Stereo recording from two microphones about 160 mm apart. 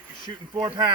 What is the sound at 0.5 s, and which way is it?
Speech, 30° right (ahead or behind).